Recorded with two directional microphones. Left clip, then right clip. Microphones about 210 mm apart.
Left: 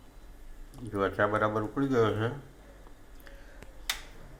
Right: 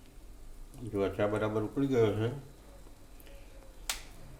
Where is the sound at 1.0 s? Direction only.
Centre (ahead or behind).